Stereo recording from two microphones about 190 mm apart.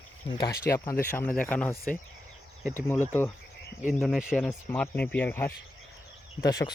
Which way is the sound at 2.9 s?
10° left (ahead or behind).